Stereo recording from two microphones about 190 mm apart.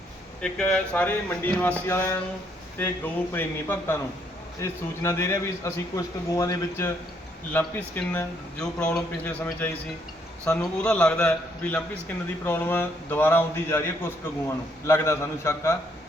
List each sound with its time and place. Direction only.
0.4 s a man's voice: 5° left (ahead or behind)